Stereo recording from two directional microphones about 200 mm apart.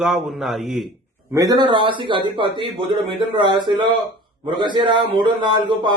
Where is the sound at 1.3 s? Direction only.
15° right (ahead or behind).